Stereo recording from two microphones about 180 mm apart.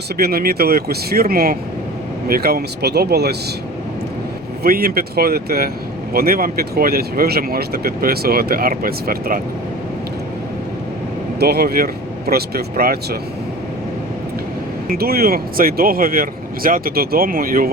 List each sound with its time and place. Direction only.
0.2 s speech: 60° right (ahead or behind)
4.6 s speech: 55° right (ahead or behind)
11.3 s speech: 60° right (ahead or behind)
14.8 s speech: 55° right (ahead or behind)